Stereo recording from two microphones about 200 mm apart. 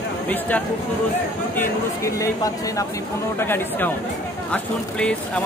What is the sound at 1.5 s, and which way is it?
Speech, 15° left (ahead or behind).